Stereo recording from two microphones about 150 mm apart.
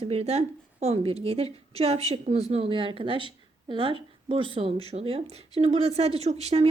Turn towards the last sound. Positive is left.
turn(degrees=-45)  # may be behind; listen again after turning